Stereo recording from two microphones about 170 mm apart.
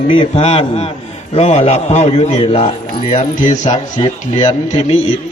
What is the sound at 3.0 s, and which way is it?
Speech, 50° left (ahead or behind).